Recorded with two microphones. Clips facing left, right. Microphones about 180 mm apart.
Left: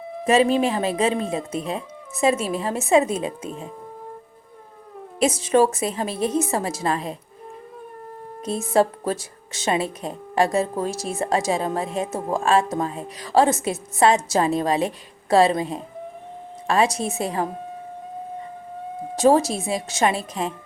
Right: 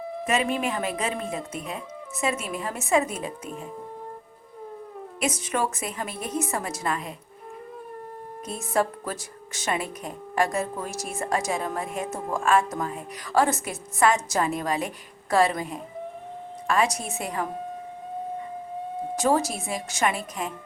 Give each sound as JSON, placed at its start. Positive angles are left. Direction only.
{"t": 0.3, "sound": "speech", "side_deg": 30}
{"t": 5.2, "sound": "speech", "side_deg": 30}
{"t": 8.4, "sound": "speech", "side_deg": 30}
{"t": 19.1, "sound": "speech", "side_deg": 25}